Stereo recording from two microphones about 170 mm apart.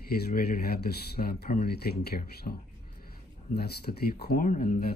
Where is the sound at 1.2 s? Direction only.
65° left (ahead or behind).